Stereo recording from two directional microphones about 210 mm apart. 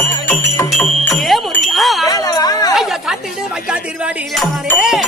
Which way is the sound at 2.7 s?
Centre (ahead or behind).